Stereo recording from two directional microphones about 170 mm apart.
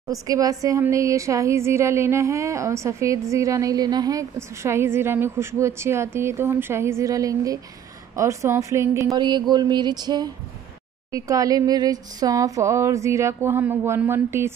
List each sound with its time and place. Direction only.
0.1 s speech: 20° right (ahead or behind)